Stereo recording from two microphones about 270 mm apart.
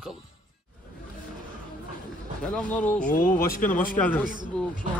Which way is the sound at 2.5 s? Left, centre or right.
Centre.